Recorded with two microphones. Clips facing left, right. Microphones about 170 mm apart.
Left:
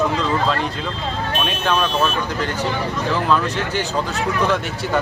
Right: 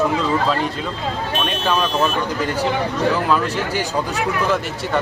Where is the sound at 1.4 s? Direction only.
5° right (ahead or behind).